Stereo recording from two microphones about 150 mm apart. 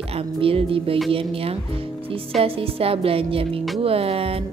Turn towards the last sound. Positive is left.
turn(degrees=-40)  # may be behind; listen again after turning